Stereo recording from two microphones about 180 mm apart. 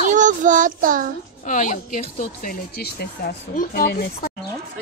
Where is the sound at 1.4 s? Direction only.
45° left (ahead or behind).